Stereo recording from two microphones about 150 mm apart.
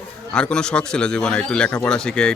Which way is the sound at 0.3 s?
5° left (ahead or behind).